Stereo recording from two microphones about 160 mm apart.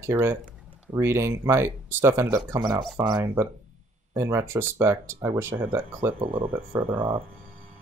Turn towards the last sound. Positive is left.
turn(degrees=-35)  # may be behind; listen again after turning